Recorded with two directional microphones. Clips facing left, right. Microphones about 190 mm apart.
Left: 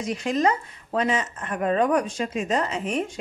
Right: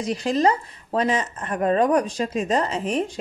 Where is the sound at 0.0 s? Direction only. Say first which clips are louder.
Right 2 dB; 35° right (ahead or behind).